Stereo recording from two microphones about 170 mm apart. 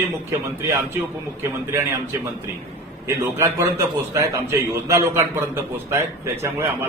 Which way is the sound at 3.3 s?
15° right (ahead or behind).